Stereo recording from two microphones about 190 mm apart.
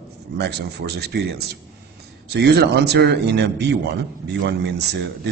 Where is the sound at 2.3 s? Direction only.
60° right (ahead or behind).